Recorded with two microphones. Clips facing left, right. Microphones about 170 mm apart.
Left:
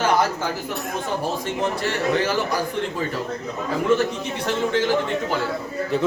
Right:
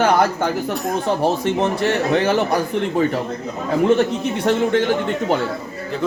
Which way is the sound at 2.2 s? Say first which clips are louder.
Right 5 dB; 60° right (ahead or behind).